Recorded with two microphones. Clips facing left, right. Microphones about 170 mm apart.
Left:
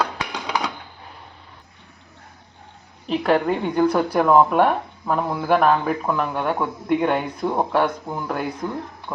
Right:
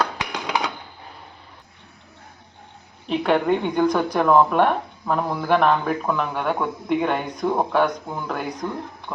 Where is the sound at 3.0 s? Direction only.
Centre (ahead or behind).